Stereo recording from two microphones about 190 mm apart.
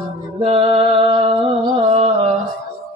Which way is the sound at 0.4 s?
30° right (ahead or behind).